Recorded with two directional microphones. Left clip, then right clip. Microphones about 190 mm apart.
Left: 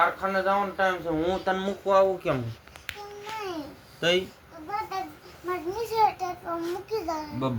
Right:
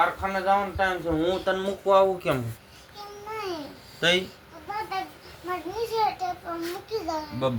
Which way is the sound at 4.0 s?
5° left (ahead or behind).